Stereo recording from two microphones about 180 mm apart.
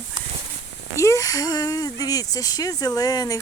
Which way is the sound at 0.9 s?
15° left (ahead or behind).